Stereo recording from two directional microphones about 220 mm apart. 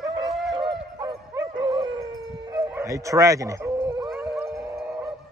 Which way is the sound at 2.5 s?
10° right (ahead or behind).